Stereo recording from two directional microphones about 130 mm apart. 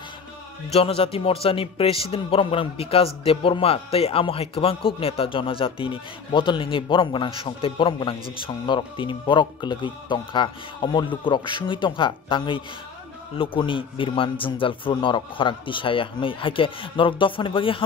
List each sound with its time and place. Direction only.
0.7 s a man's voice: 50° left (ahead or behind)